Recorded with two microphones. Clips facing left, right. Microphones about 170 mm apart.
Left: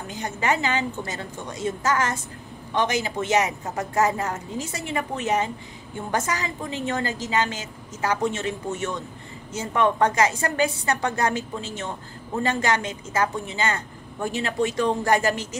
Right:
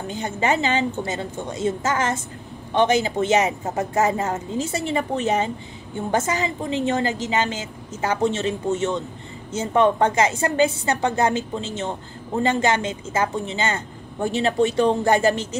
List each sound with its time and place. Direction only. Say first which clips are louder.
0.1 s speech: right 3 dB; 25° right (ahead or behind)